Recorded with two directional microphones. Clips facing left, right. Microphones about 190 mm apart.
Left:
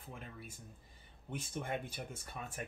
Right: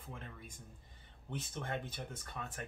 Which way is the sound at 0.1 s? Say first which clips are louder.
Left 1 dB; 10° left (ahead or behind).